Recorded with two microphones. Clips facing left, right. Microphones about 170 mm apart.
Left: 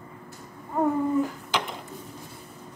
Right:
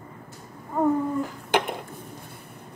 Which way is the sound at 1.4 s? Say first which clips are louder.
Right 5 dB; 55° right (ahead or behind).